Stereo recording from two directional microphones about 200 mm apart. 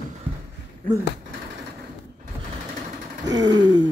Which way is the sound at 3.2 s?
20° right (ahead or behind).